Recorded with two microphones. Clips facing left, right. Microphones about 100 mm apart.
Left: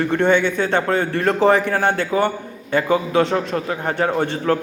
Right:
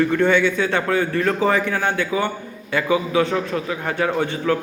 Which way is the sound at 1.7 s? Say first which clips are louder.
Left 3 dB; 40° left (ahead or behind).